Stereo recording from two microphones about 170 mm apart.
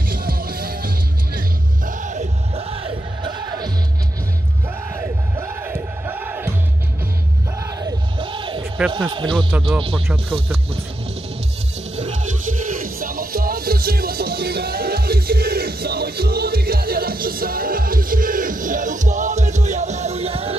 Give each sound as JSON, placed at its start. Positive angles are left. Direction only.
{"t": 0.1, "sound": "music", "side_deg": -60}
{"t": 1.9, "sound": "music", "side_deg": -45}
{"t": 4.9, "sound": "music", "side_deg": -15}
{"t": 8.2, "sound": "a sound", "side_deg": -30}
{"t": 8.9, "sound": "speech", "side_deg": -30}
{"t": 11.9, "sound": "music", "side_deg": -45}